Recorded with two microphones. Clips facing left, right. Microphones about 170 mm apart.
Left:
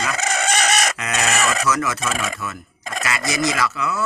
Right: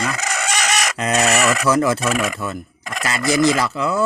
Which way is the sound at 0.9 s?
35° right (ahead or behind).